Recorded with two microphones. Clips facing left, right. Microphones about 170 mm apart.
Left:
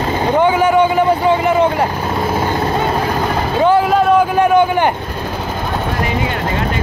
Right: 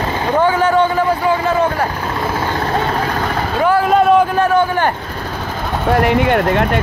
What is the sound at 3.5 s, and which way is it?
Vehicle, 20° left (ahead or behind).